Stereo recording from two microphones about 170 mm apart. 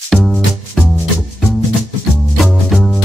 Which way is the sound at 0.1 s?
Centre (ahead or behind).